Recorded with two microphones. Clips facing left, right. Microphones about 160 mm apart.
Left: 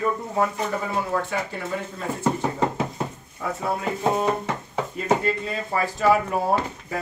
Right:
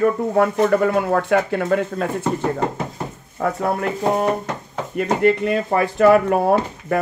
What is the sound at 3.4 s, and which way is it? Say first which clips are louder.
Speech: right 6 dB; 65° right (ahead or behind).